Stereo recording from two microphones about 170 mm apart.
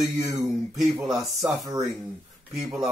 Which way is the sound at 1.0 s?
Centre (ahead or behind).